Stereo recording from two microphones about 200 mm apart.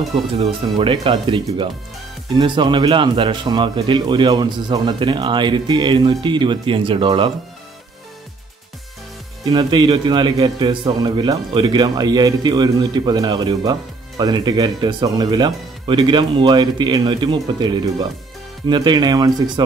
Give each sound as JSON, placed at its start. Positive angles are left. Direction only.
{"t": 0.1, "sound": "a man's voice", "side_deg": -25}
{"t": 9.4, "sound": "a man's voice", "side_deg": -20}